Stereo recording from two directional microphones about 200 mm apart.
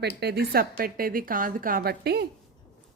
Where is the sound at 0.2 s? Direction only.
55° right (ahead or behind).